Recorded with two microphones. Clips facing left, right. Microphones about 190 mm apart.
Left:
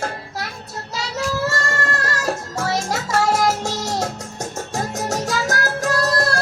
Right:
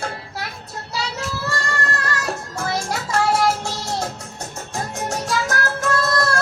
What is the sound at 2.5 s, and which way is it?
Music, 40° left (ahead or behind).